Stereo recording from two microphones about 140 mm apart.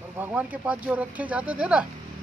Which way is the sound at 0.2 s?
10° right (ahead or behind).